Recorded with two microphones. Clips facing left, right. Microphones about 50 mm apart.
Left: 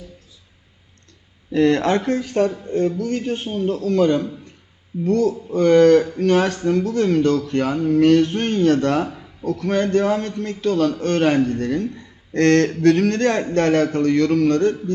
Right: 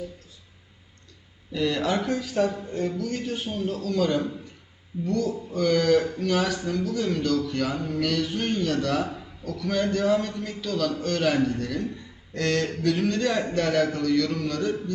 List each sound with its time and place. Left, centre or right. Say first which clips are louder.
1.5 s a man's voice: left 8 dB; left
3.5 s a man's voice: left 8 dB; left
12.3 s a man's voice: left 10 dB; left